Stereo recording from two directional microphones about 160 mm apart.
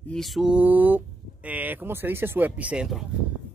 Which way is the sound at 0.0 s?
5° left (ahead or behind).